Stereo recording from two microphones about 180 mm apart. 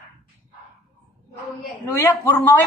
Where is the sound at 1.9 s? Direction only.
10° left (ahead or behind).